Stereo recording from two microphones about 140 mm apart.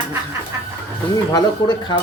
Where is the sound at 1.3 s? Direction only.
30° left (ahead or behind).